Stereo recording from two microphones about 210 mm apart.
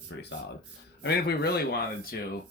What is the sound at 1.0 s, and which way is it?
Speech, 50° left (ahead or behind).